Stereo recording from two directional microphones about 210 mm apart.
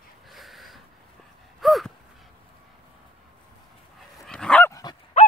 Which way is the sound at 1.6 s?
Centre (ahead or behind).